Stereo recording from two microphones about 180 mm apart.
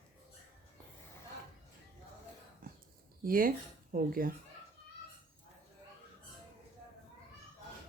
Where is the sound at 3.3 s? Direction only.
50° right (ahead or behind).